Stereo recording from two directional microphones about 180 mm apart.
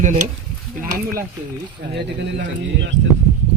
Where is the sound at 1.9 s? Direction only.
75° right (ahead or behind).